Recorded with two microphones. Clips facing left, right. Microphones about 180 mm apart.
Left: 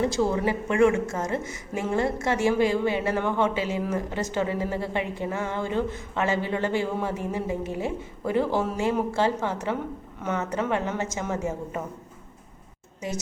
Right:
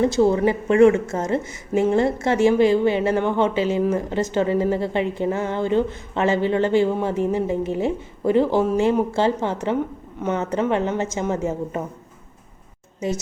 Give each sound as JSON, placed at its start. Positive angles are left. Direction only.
{"t": 0.1, "sound": "a woman's voice", "side_deg": -25}